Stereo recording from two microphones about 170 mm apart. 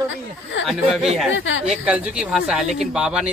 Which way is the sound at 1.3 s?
90° left.